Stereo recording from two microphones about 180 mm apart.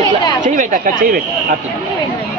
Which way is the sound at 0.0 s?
25° left (ahead or behind).